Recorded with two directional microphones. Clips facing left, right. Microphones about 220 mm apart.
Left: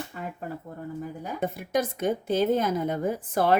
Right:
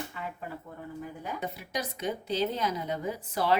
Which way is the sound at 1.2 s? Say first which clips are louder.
Left 7 dB; 50° left (ahead or behind).